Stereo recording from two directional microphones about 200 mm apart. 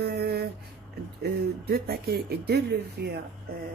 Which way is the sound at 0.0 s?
55° right (ahead or behind).